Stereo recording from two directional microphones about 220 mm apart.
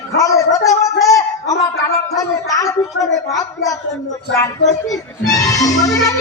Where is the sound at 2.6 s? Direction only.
15° left (ahead or behind).